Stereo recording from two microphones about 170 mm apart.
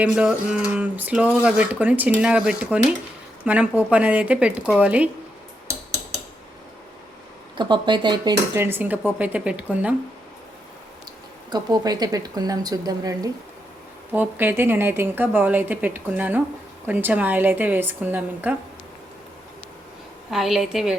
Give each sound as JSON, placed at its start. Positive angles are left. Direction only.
{"t": 0.0, "sound": "a woman's voice", "side_deg": -5}
{"t": 7.6, "sound": "speech", "side_deg": -25}
{"t": 8.5, "sound": "a woman's voice", "side_deg": -15}
{"t": 11.5, "sound": "speech", "side_deg": -25}
{"t": 14.1, "sound": "a woman's voice", "side_deg": -10}
{"t": 20.3, "sound": "a woman's voice", "side_deg": 0}